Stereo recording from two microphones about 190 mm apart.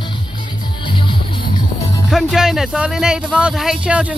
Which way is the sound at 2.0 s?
Centre (ahead or behind).